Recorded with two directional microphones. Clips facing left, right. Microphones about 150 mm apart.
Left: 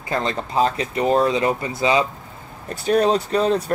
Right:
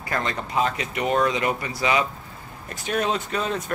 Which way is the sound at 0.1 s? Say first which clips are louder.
Left 4 dB; 30° left (ahead or behind).